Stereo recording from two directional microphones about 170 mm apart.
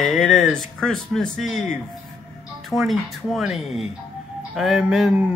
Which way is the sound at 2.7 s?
Centre (ahead or behind).